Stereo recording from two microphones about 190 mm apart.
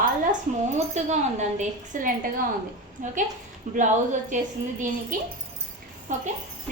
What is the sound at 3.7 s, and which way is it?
A woman's voice, 40° right (ahead or behind).